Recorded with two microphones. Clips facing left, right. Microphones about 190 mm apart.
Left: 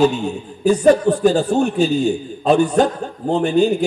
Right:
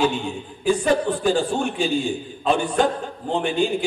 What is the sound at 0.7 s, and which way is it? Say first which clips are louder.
A man's voice: left 7 dB; 40° left (ahead or behind).